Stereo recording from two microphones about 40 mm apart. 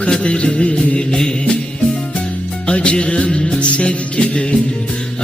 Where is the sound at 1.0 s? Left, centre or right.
Centre.